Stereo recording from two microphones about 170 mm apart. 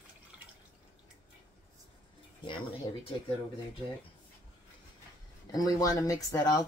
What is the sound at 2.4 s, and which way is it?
Speech, 30° left (ahead or behind).